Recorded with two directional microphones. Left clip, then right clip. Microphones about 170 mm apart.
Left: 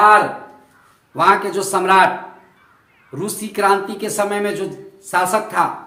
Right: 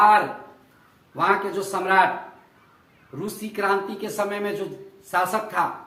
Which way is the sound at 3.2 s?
35° left (ahead or behind).